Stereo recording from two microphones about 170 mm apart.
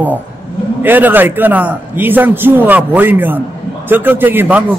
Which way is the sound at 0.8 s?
10° right (ahead or behind).